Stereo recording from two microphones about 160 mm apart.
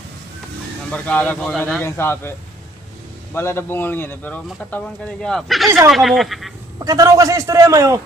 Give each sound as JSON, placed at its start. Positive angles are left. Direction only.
{"t": 0.9, "sound": "a man's voice", "side_deg": 10}
{"t": 1.8, "sound": "a man's voice", "side_deg": 15}
{"t": 3.3, "sound": "a man's voice", "side_deg": 15}
{"t": 6.8, "sound": "a man's voice", "side_deg": -20}